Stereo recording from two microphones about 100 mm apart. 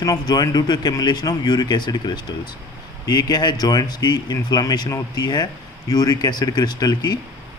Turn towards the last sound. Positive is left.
turn(degrees=45)  # may be behind; listen again after turning